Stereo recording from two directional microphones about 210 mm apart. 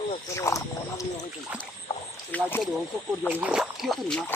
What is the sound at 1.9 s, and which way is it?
Rowboat, 30° left (ahead or behind).